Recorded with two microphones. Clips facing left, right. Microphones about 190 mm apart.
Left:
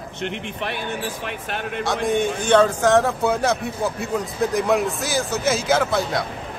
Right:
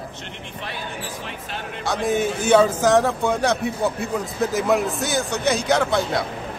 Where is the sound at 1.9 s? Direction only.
5° right (ahead or behind).